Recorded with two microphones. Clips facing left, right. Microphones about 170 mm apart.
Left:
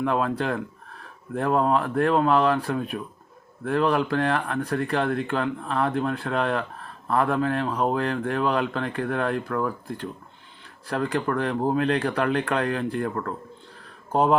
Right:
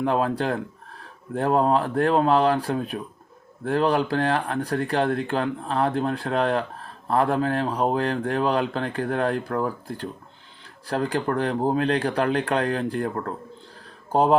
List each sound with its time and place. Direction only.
0.0 s speech: 30° right (ahead or behind)